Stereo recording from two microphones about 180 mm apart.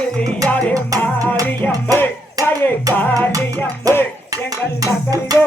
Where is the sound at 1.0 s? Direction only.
10° left (ahead or behind).